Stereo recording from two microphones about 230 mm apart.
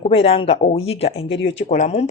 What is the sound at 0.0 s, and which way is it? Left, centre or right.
Speech, left.